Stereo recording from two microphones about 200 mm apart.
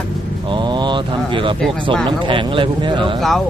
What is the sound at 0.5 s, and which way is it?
Speech, 20° right (ahead or behind).